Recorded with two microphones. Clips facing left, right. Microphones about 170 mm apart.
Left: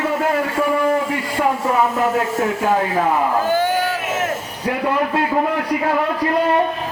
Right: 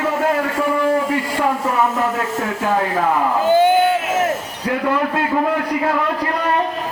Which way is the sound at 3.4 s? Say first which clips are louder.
Right 5 dB; 20° right (ahead or behind).